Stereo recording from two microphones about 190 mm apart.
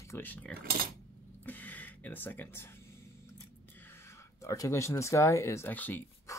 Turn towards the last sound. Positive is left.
turn(degrees=10)  # may be behind; listen again after turning